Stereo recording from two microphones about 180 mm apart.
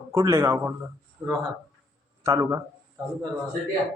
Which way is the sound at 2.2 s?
15° right (ahead or behind).